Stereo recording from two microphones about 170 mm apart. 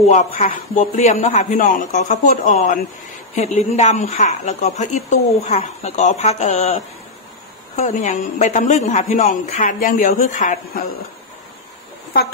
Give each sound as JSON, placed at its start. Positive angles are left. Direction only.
{"t": 0.1, "sound": "a man's voice", "side_deg": 40}